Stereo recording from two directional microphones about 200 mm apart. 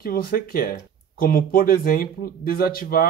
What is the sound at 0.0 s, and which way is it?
Speech, 45° left (ahead or behind).